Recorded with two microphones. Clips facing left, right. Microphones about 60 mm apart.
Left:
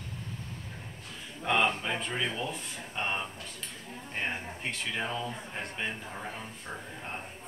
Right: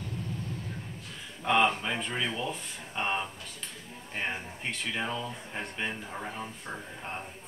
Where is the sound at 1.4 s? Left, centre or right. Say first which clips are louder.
Right 2 dB; centre.